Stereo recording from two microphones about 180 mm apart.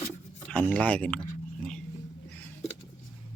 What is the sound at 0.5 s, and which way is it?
Speech, 5° left (ahead or behind).